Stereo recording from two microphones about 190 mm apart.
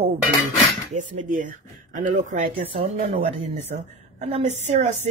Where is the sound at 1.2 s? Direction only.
45° right (ahead or behind).